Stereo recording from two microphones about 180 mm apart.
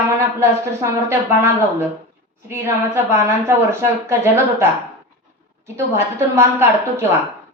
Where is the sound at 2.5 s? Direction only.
15° right (ahead or behind).